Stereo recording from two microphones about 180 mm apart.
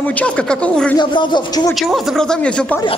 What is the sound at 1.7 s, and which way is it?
A man's voice, centre (ahead or behind).